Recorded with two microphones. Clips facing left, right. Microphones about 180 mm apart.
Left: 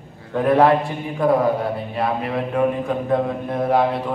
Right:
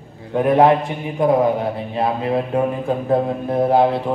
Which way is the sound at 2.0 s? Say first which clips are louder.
Right 4 dB; 25° right (ahead or behind).